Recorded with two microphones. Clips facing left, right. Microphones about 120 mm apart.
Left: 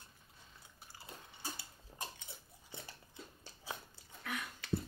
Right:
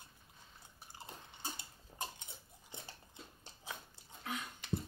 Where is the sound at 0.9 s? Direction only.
20° right (ahead or behind).